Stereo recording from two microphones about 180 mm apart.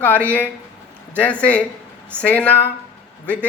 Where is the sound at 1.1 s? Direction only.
5° left (ahead or behind).